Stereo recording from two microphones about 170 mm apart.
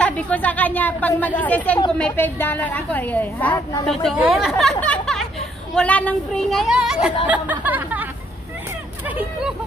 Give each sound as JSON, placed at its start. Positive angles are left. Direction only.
{"t": 0.0, "sound": "a woman's voice", "side_deg": 10}
{"t": 4.2, "sound": "chatter", "side_deg": 0}
{"t": 5.8, "sound": "a woman's voice", "side_deg": 10}